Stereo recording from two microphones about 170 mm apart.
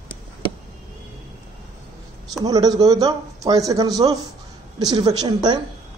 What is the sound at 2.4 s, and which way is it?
Speech, 20° right (ahead or behind).